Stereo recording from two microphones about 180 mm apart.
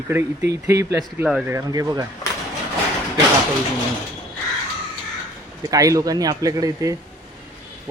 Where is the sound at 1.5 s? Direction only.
20° right (ahead or behind).